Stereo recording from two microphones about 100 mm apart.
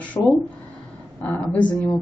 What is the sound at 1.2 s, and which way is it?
Speech, 20° left (ahead or behind).